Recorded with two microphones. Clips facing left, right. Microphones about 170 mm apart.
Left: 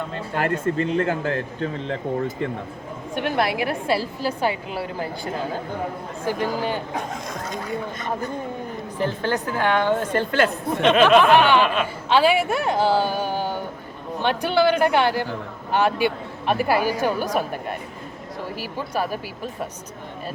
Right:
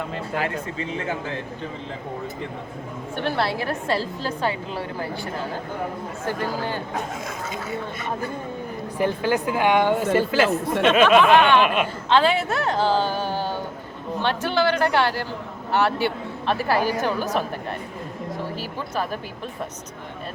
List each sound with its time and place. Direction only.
0.6 s speech: 55° left (ahead or behind)
3.2 s a woman's voice: 15° left (ahead or behind)
9.0 s a woman's voice: 10° right (ahead or behind)
11.2 s a woman's voice: 10° left (ahead or behind)
11.6 s a woman's voice: 15° right (ahead or behind)
12.0 s a woman's voice: 10° left (ahead or behind)